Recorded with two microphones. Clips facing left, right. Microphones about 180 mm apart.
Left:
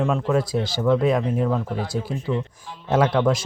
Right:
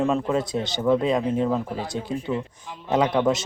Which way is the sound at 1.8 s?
20° right (ahead or behind).